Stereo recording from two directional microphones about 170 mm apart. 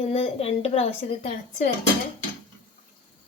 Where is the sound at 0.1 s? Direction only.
35° left (ahead or behind).